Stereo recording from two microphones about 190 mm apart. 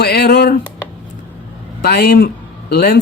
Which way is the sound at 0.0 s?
55° left (ahead or behind).